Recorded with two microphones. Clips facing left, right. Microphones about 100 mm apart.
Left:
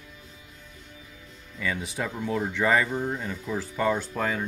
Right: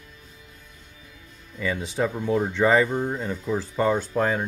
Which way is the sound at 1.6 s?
20° right (ahead or behind).